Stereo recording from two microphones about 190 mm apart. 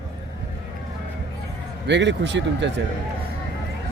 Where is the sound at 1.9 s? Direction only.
70° right (ahead or behind).